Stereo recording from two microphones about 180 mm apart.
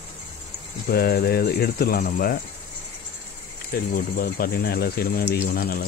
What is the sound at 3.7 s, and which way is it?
Speech, 55° left (ahead or behind).